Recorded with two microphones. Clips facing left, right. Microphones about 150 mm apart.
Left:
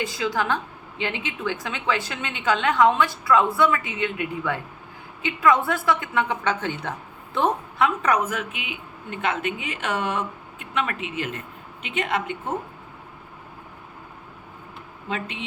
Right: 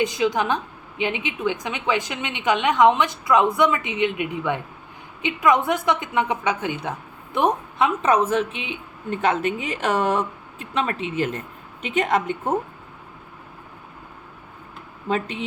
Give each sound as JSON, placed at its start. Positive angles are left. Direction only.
{"t": 0.0, "sound": "a woman's voice", "side_deg": -20}
{"t": 15.1, "sound": "a woman's voice", "side_deg": -40}